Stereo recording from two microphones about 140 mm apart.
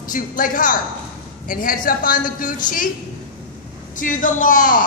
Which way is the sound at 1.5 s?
85° left.